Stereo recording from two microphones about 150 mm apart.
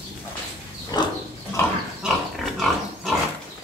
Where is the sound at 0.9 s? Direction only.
30° left (ahead or behind).